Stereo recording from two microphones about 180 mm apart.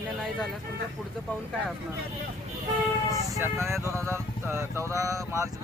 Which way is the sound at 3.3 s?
15° right (ahead or behind).